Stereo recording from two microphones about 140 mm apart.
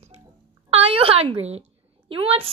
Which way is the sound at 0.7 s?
45° right (ahead or behind).